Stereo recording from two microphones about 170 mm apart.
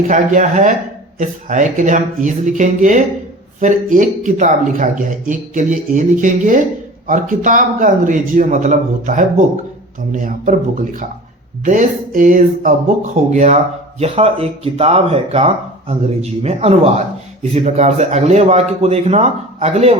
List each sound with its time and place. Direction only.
0.1 s speech: 50° right (ahead or behind)